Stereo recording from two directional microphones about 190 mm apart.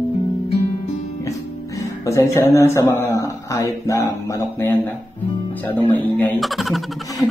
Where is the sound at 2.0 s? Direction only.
15° left (ahead or behind).